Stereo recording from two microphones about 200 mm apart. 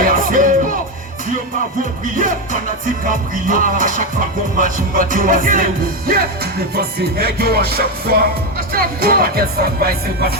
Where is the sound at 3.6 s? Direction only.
40° right (ahead or behind).